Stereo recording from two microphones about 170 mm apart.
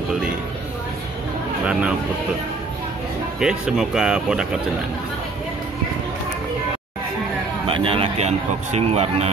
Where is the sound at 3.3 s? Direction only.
5° right (ahead or behind).